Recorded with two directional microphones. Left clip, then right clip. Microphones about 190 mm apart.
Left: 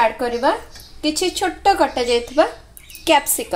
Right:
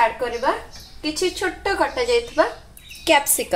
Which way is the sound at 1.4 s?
35° left (ahead or behind).